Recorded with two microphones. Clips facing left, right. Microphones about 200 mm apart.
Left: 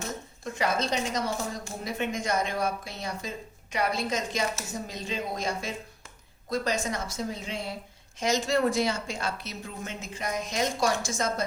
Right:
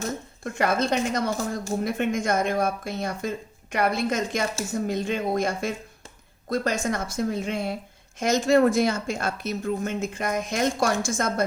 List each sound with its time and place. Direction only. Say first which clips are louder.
0.4 s a woman's voice: right 4 dB; 55° right (ahead or behind)